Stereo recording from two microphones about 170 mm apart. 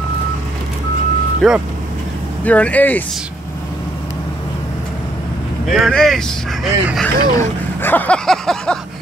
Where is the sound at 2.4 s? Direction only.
10° left (ahead or behind).